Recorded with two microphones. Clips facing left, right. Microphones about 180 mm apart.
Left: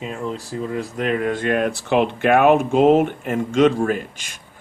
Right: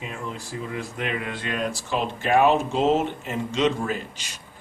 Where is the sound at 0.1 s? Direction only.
35° left (ahead or behind).